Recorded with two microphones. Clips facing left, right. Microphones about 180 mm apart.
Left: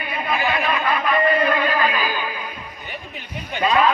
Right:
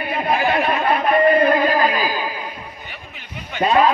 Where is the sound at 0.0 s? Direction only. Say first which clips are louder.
Right 4 dB; 55° right (ahead or behind); by 2.5 s 30° right (ahead or behind).